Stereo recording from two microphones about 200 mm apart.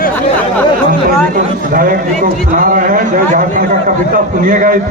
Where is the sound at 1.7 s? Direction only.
45° right (ahead or behind).